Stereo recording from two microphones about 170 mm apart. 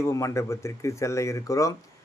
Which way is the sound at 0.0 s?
15° left (ahead or behind).